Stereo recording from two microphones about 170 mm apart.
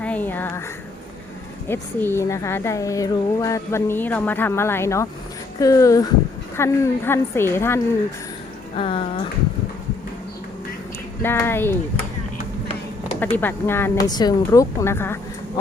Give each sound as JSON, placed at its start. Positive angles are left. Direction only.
{"t": 0.0, "sound": "a sound", "side_deg": 10}
{"t": 1.6, "sound": "speech", "side_deg": 15}
{"t": 8.7, "sound": "speech", "side_deg": 30}
{"t": 11.2, "sound": "speech", "side_deg": 15}
{"t": 13.1, "sound": "speech", "side_deg": 10}